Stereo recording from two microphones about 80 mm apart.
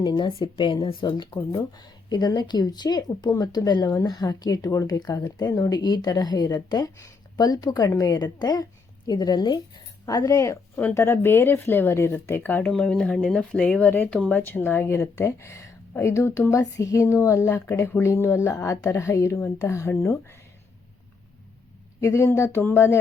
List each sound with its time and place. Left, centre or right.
0.2 s speech: left
1.5 s a woman's voice: left
10.1 s a woman's voice: left
10.8 s speech: left
12.7 s a woman's voice: centre; by 20.4 s left
22.0 s a woman's voice: left